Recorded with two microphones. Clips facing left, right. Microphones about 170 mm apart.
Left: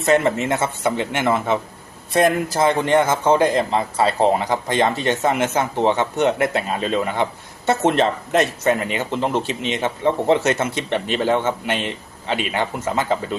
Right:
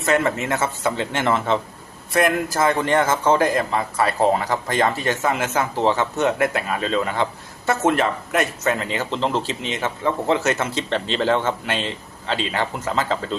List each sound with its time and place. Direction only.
0.0 s a man's voice: 20° left (ahead or behind)
2.1 s a man's voice: 25° left (ahead or behind)
8.8 s speech: 15° left (ahead or behind)